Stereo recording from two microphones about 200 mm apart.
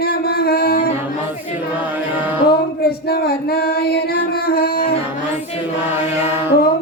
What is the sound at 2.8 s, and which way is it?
Female singing, 50° left (ahead or behind).